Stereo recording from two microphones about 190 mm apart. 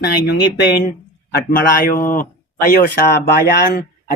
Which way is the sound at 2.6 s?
55° left (ahead or behind).